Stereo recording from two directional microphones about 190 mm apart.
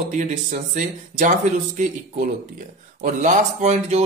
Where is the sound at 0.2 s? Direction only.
40° right (ahead or behind).